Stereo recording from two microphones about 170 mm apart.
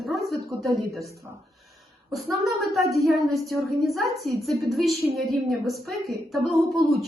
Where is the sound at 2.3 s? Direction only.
Centre (ahead or behind).